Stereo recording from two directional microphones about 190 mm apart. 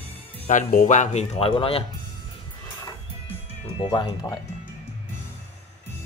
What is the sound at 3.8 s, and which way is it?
Speech, 25° left (ahead or behind).